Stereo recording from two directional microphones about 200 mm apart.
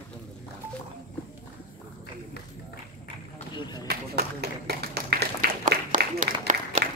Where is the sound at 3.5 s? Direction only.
20° left (ahead or behind).